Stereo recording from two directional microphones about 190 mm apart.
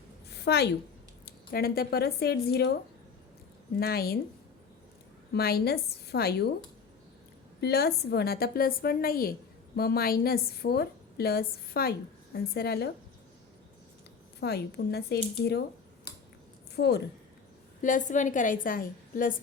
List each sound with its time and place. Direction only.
0.3 s a sound: 60° left (ahead or behind)
1.2 s speech: 55° left (ahead or behind)
3.8 s a woman's voice: 55° left (ahead or behind)
5.3 s a woman's voice: 55° left (ahead or behind)
7.6 s a woman's voice: 55° left (ahead or behind)
14.4 s a woman's voice: 60° left (ahead or behind)
16.7 s a woman's voice: 60° left (ahead or behind)
17.8 s a woman's voice: 40° left (ahead or behind)